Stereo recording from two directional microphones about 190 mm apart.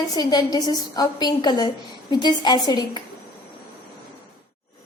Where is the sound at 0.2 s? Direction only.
20° left (ahead or behind).